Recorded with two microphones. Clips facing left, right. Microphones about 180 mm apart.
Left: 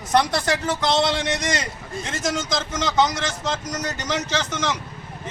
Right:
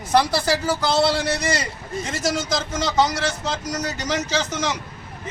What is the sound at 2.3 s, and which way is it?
Speech, 35° right (ahead or behind).